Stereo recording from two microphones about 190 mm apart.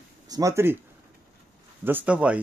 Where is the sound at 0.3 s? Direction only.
15° right (ahead or behind).